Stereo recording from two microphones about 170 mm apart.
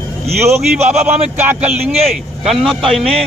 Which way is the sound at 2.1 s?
Centre (ahead or behind).